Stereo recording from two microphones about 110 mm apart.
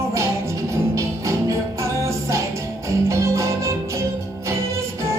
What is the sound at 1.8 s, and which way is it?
Music, 25° right (ahead or behind).